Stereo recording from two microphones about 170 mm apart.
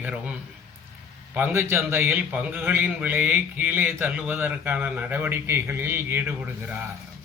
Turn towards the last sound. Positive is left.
turn(degrees=-10)  # may be behind; listen again after turning